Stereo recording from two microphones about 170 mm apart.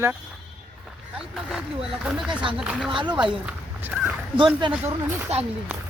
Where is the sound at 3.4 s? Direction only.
10° right (ahead or behind).